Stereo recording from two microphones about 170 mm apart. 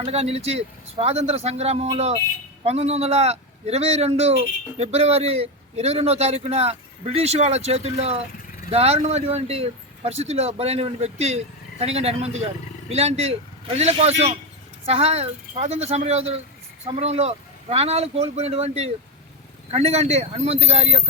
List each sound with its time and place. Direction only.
0.0 s a man's voice: 35° right (ahead or behind)